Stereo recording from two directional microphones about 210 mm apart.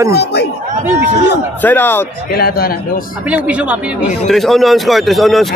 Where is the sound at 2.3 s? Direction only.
45° left (ahead or behind).